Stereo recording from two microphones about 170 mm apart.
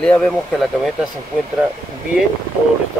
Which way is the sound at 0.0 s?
5° left (ahead or behind).